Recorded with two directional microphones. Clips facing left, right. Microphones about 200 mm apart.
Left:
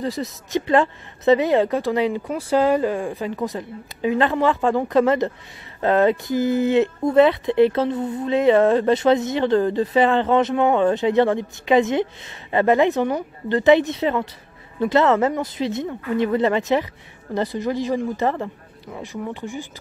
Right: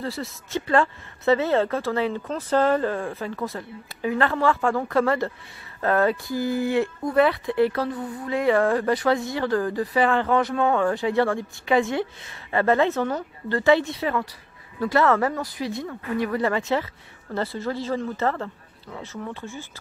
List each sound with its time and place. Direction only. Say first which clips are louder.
0.0 s a woman's voice: left 5 dB; 20° left (ahead or behind)